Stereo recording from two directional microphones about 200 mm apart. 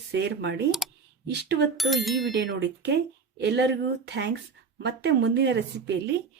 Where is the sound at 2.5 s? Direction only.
60° right (ahead or behind).